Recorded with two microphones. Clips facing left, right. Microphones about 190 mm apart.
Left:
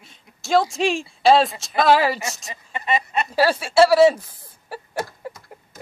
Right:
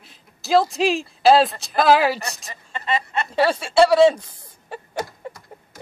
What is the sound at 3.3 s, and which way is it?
Speech, 5° left (ahead or behind).